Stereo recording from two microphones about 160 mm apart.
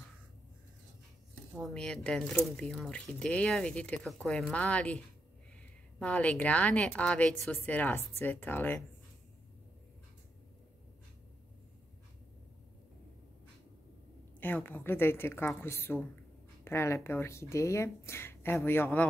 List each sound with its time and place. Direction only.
1.5 s speech: 5° left (ahead or behind)
14.4 s speech: 10° left (ahead or behind)